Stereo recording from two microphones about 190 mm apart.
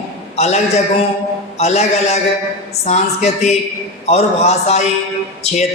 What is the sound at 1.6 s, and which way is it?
A woman's voice, 35° left (ahead or behind).